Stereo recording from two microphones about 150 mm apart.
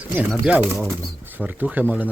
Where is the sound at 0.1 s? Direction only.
10° right (ahead or behind).